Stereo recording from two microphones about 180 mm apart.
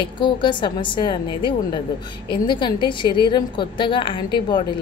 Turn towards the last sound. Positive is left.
turn(degrees=25)  # may be behind; listen again after turning